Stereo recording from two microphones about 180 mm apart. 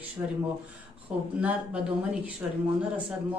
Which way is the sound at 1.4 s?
5° right (ahead or behind).